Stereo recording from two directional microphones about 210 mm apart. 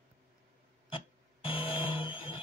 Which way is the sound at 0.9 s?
25° left (ahead or behind).